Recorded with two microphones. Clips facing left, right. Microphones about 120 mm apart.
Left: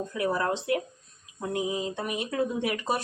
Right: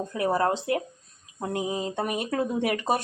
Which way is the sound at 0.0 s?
35° right (ahead or behind).